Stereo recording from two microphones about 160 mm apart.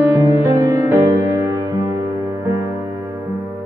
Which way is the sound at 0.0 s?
20° right (ahead or behind).